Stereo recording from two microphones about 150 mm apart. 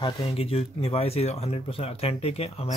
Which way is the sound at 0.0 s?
35° left (ahead or behind).